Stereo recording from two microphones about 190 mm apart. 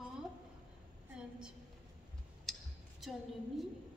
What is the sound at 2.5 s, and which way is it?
Clicking, centre (ahead or behind).